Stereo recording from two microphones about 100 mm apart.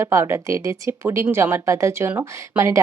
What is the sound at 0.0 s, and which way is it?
A woman's voice, 25° right (ahead or behind).